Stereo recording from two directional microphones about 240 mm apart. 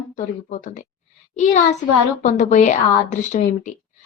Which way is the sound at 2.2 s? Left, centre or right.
Left.